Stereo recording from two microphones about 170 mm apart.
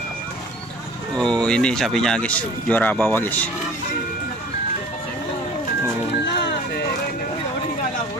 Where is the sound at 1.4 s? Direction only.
5° left (ahead or behind).